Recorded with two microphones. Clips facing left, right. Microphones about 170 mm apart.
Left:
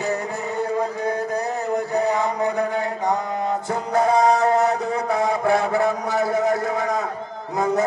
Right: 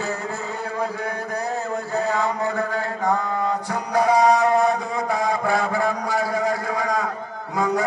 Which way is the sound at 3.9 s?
25° left (ahead or behind).